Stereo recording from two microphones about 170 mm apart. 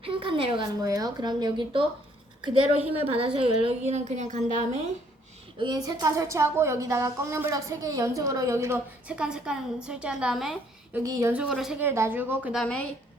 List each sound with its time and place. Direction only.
0.0 s speech: 30° right (ahead or behind)
2.9 s a woman's voice: 35° right (ahead or behind)
5.5 s speech: 25° right (ahead or behind); by 11.0 s centre (ahead or behind)
11.0 s speech: 20° right (ahead or behind)
11.3 s speech: 5° right (ahead or behind)